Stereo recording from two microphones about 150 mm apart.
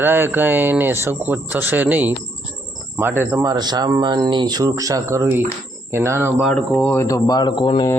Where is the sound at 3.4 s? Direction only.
25° right (ahead or behind).